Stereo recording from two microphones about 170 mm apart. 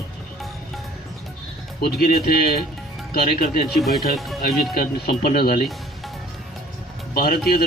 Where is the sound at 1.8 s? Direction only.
60° left (ahead or behind).